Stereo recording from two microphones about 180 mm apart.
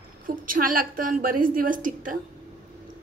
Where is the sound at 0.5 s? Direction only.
50° right (ahead or behind).